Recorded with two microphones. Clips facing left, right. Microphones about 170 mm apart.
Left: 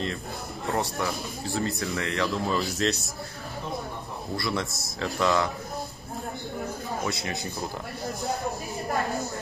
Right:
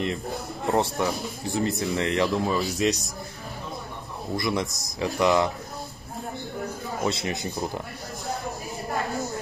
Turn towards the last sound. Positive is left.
turn(degrees=-20)  # may be behind; listen again after turning